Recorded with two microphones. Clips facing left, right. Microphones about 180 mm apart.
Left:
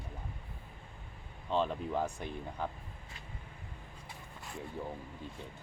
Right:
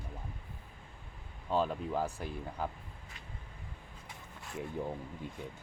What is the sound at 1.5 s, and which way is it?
Speech, 5° right (ahead or behind).